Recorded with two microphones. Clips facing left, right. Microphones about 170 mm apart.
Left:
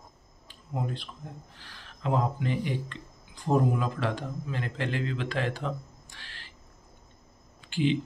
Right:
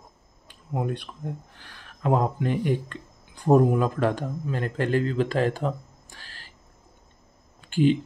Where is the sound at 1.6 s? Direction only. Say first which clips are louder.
Right 5 dB; 50° right (ahead or behind).